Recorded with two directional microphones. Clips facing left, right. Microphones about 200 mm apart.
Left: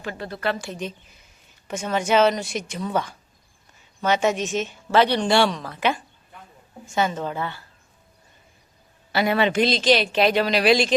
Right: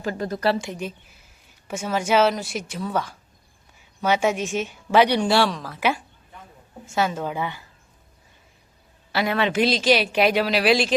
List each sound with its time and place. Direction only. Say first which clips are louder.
0.0 s a woman's voice: right 4 dB; 40° right (ahead or behind)
0.8 s speech: even; 10° right (ahead or behind)
9.1 s speech: left 2 dB; centre (ahead or behind)